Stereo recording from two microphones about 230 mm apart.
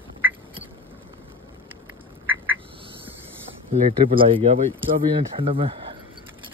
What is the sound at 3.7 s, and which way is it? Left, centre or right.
Speech, right.